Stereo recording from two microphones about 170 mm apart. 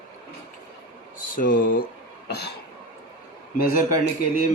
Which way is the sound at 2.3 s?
75° left (ahead or behind).